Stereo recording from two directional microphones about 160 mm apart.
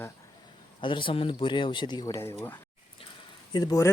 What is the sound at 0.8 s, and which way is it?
Speech, 30° left (ahead or behind).